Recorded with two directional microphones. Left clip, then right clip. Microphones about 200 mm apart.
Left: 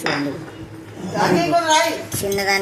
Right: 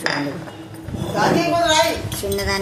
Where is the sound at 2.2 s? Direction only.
20° left (ahead or behind).